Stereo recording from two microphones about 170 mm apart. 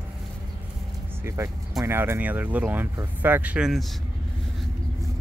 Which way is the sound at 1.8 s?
15° right (ahead or behind).